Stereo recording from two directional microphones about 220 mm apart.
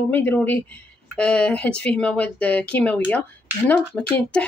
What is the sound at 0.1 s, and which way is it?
Speech, 10° left (ahead or behind).